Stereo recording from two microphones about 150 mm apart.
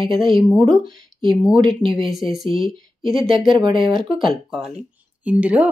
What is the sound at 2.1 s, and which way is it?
Speech, centre (ahead or behind).